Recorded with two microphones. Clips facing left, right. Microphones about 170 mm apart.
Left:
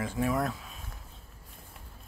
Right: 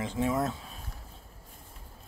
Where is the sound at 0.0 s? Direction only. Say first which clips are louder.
Even; 20° right (ahead or behind).